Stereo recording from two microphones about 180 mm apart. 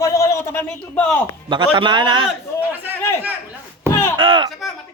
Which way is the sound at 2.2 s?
10° right (ahead or behind).